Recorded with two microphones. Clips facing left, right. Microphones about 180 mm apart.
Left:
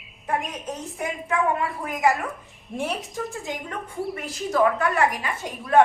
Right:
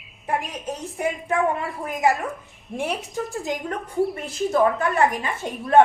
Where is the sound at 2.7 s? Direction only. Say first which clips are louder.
Right 1 dB; centre (ahead or behind).